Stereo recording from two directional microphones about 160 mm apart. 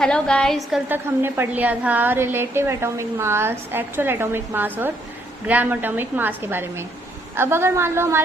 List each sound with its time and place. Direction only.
0.0 s a woman's voice: 5° left (ahead or behind)
0.9 s a woman's voice: 15° right (ahead or behind)